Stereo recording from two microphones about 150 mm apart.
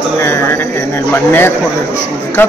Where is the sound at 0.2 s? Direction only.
15° left (ahead or behind).